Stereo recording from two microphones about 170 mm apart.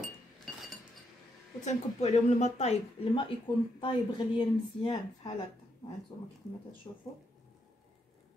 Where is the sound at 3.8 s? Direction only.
30° left (ahead or behind).